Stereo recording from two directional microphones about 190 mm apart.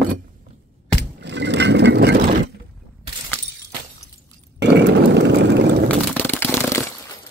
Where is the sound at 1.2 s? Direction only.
65° right (ahead or behind).